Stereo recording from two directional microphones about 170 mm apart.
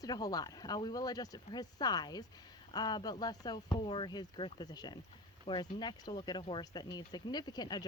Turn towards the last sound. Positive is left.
turn(degrees=25)  # may be behind; listen again after turning